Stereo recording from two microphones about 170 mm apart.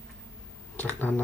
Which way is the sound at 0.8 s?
10° left (ahead or behind).